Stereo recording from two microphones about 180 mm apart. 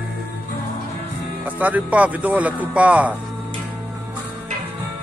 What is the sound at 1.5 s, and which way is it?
Speech, 10° right (ahead or behind).